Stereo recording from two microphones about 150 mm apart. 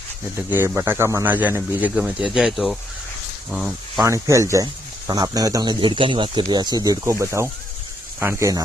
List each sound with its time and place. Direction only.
0.3 s speech: 15° right (ahead or behind); by 4.0 s centre (ahead or behind)
4.0 s speech: 20° right (ahead or behind)